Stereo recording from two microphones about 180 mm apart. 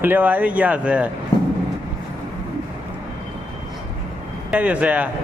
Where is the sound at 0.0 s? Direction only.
10° right (ahead or behind).